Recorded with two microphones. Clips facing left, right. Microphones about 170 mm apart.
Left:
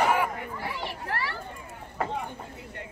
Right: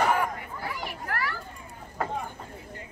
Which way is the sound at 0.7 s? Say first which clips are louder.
Left 1 dB; 30° left (ahead or behind).